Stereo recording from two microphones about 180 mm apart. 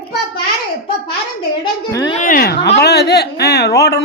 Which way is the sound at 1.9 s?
20° left (ahead or behind).